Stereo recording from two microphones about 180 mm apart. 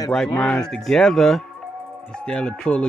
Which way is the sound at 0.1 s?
5° left (ahead or behind).